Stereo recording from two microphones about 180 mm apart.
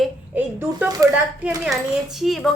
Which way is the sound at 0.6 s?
10° right (ahead or behind).